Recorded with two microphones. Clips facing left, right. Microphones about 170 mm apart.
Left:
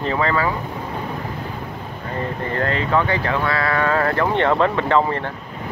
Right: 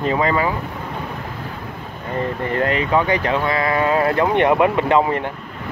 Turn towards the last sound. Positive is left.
turn(degrees=-15)  # may be behind; listen again after turning